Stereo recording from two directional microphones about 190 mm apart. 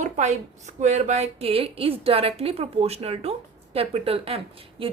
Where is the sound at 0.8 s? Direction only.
40° right (ahead or behind).